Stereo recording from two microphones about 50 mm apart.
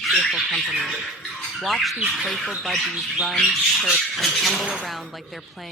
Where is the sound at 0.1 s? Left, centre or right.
Centre.